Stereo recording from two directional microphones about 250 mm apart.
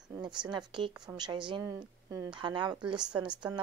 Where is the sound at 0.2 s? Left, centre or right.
Centre.